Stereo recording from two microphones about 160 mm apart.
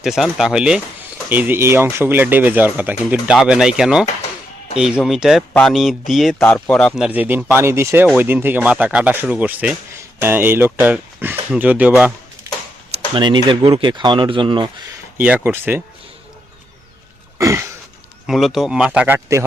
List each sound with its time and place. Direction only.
0.0 s speech: centre (ahead or behind)
13.1 s speech: 30° right (ahead or behind)
15.2 s speech: 10° right (ahead or behind)
17.3 s throat clearing: 20° right (ahead or behind)
18.3 s speech: centre (ahead or behind)